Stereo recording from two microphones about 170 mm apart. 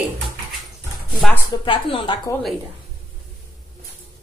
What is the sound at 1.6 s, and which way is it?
Speech, 30° left (ahead or behind).